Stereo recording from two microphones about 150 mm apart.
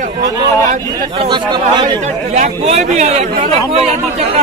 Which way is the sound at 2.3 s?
50° right (ahead or behind).